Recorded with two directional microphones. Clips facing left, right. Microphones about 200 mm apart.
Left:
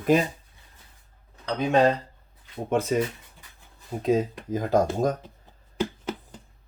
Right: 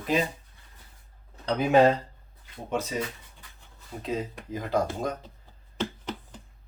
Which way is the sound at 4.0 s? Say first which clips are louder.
Left 8 dB; 45° left (ahead or behind).